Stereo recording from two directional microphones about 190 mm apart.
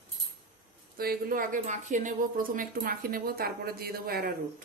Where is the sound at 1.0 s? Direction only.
50° right (ahead or behind).